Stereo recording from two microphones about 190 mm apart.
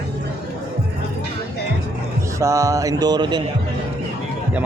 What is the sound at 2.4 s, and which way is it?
Speech, 15° right (ahead or behind).